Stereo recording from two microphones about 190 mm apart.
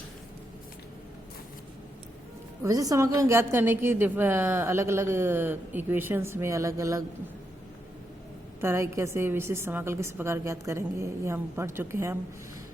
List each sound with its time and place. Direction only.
2.6 s a woman's voice: 15° right (ahead or behind)
8.6 s a woman's voice: 15° right (ahead or behind)